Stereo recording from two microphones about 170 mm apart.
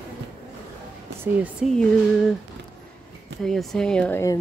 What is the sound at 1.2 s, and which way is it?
Speech, 10° right (ahead or behind).